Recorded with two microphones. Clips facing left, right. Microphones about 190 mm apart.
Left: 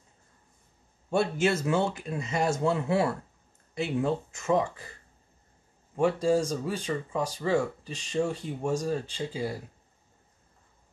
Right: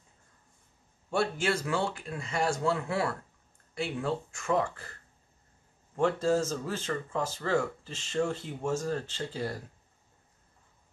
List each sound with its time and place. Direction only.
1.1 s speech: 20° left (ahead or behind)
5.9 s speech: 10° left (ahead or behind)